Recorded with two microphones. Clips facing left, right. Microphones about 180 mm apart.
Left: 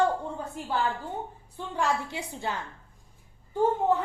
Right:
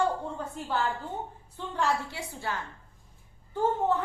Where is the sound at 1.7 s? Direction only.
20° left (ahead or behind).